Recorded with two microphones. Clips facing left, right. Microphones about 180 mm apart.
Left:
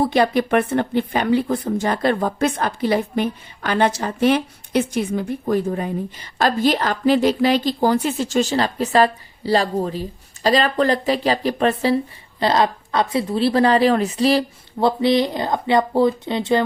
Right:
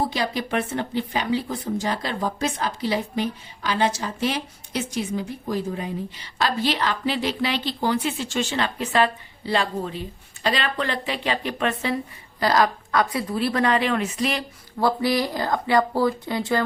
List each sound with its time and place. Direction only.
0.0 s a woman's voice: 60° left (ahead or behind); by 16.6 s 20° left (ahead or behind)